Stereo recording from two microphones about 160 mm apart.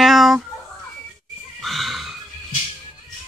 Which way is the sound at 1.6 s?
Centre (ahead or behind).